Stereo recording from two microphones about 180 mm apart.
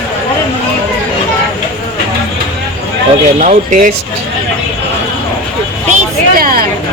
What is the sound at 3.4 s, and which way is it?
Speech, 45° right (ahead or behind).